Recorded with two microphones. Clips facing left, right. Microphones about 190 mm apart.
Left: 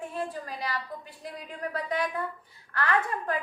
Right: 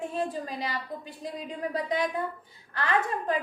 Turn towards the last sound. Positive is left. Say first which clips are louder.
# right 1 dB
turn(degrees=-20)  # may be behind; listen again after turning